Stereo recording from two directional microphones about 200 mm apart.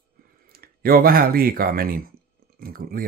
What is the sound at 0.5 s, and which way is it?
Speech, 50° right (ahead or behind).